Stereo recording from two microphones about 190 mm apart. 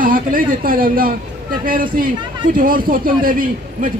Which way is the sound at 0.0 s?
45° right (ahead or behind).